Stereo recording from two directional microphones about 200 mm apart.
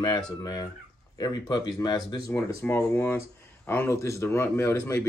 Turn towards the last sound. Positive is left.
turn(degrees=15)  # may be behind; listen again after turning